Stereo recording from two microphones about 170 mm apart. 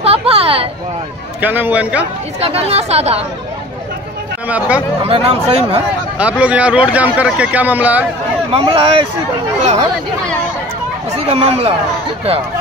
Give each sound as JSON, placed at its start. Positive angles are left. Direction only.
{"t": 0.0, "sound": "a sound", "side_deg": -35}
{"t": 1.4, "sound": "a man's voice", "side_deg": -10}
{"t": 2.4, "sound": "speech", "side_deg": -35}
{"t": 4.5, "sound": "a man's voice", "side_deg": -10}
{"t": 5.0, "sound": "speech", "side_deg": -35}
{"t": 6.1, "sound": "a man's voice", "side_deg": -5}
{"t": 8.5, "sound": "speech", "side_deg": -35}
{"t": 11.1, "sound": "speech", "side_deg": -35}